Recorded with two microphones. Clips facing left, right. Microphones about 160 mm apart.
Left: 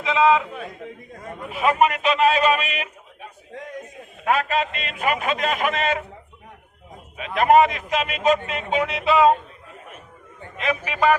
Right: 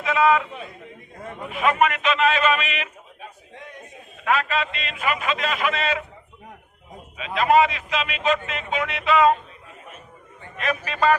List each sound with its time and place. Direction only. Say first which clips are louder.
0.0 s a man's voice: left 1 dB; 20° left (ahead or behind)
1.5 s a man's voice: left 1 dB; 35° left (ahead or behind)
7.2 s a man's voice: left 2 dB; 50° left (ahead or behind); by 9.3 s 35° left (ahead or behind)
10.6 s a man's voice: left 1 dB; 15° left (ahead or behind)